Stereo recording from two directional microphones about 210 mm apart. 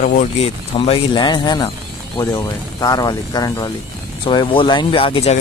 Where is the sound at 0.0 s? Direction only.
35° left (ahead or behind).